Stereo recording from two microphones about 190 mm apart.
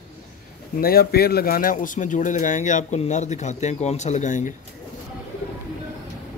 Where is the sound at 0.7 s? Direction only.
55° left (ahead or behind).